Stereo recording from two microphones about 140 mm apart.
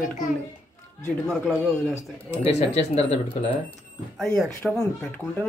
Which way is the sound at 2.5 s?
50° left (ahead or behind).